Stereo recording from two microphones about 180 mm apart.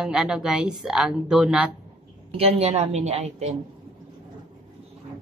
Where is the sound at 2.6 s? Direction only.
35° right (ahead or behind).